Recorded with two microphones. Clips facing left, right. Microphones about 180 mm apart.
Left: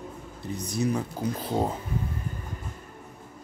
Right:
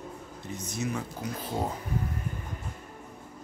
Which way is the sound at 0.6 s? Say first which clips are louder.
Left 6 dB; 35° left (ahead or behind).